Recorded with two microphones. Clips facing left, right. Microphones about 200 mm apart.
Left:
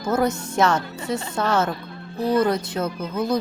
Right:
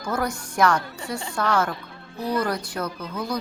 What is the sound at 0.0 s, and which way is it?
A woman's voice, 20° left (ahead or behind).